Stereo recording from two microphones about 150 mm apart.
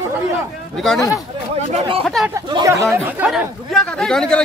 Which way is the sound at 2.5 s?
20° right (ahead or behind).